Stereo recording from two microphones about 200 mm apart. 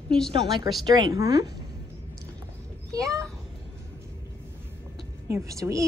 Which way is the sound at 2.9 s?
15° right (ahead or behind).